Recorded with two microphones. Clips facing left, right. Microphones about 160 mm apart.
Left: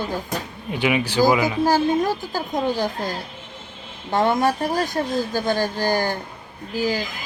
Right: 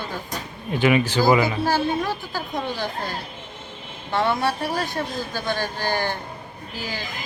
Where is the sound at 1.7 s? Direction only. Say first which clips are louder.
Left 4 dB; 45° left (ahead or behind).